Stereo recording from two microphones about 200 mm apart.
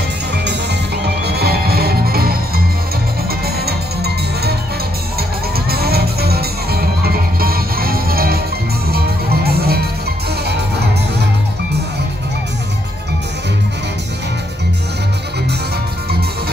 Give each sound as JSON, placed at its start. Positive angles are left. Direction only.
{"t": 1.0, "sound": "music", "side_deg": -55}
{"t": 5.7, "sound": "music", "side_deg": -50}